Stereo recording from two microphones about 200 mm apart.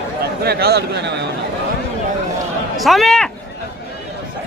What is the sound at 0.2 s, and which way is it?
Speech, 55° right (ahead or behind).